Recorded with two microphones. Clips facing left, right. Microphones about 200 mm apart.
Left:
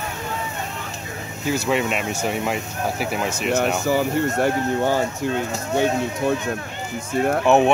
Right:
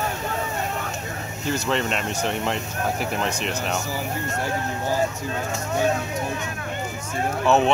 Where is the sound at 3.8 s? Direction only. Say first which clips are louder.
Left 9 dB; 65° left (ahead or behind).